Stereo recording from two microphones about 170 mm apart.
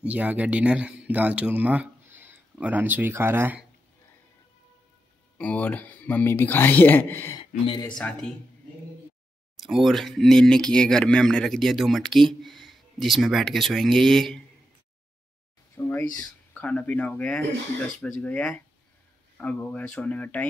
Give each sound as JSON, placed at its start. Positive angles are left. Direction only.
{"t": 0.0, "sound": "speech", "side_deg": -10}
{"t": 5.4, "sound": "speech", "side_deg": 10}
{"t": 7.3, "sound": "speech", "side_deg": 25}
{"t": 8.0, "sound": "speech", "side_deg": 5}
{"t": 9.6, "sound": "speech", "side_deg": 0}
{"t": 15.8, "sound": "speech", "side_deg": 15}